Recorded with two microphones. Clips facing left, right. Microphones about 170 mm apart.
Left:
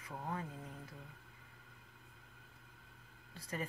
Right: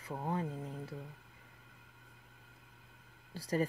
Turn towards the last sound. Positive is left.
turn(degrees=-35)  # may be behind; listen again after turning